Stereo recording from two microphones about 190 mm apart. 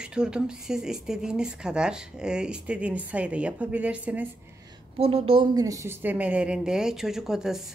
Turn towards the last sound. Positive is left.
turn(degrees=0)  # may be behind; listen again after turning